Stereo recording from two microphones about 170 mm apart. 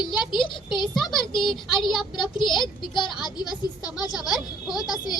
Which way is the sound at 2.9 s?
25° left (ahead or behind).